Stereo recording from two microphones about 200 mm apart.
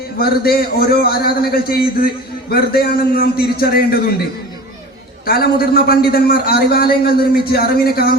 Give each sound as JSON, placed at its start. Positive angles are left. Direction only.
{"t": 0.2, "sound": "a man's voice", "side_deg": 50}
{"t": 5.2, "sound": "a man's voice", "side_deg": 50}